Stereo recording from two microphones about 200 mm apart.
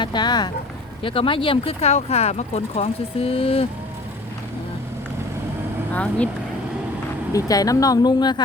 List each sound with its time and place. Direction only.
0.0 s speech: 20° left (ahead or behind)
5.9 s speech: 5° left (ahead or behind)
7.3 s speech: 20° left (ahead or behind)